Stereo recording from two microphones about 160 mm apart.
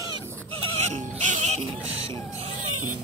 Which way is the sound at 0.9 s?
45° right (ahead or behind).